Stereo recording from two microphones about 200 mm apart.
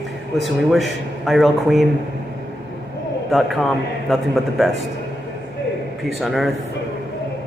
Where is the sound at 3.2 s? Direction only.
Centre (ahead or behind).